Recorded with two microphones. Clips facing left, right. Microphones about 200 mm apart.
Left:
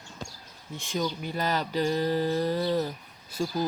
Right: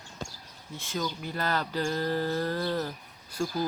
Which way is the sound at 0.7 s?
20° left (ahead or behind).